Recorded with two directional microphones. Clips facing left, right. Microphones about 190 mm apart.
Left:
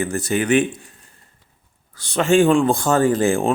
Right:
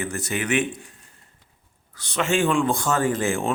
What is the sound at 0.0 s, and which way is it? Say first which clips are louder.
Speech: left 6 dB; 35° left (ahead or behind).